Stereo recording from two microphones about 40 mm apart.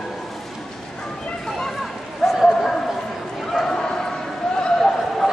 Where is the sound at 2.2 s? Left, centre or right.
Centre.